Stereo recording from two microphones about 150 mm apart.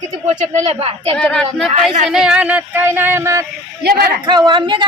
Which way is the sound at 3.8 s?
90° right.